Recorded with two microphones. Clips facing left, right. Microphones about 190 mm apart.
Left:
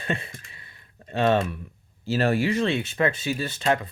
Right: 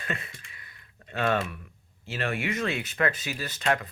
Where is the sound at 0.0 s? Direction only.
25° left (ahead or behind).